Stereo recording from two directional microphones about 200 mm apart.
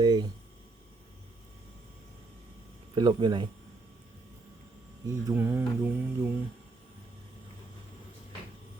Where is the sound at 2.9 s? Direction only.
20° right (ahead or behind).